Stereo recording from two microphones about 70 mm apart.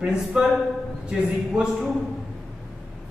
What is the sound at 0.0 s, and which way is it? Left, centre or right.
Speech, centre.